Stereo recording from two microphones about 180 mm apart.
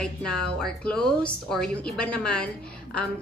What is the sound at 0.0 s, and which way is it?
A woman's voice, 5° left (ahead or behind).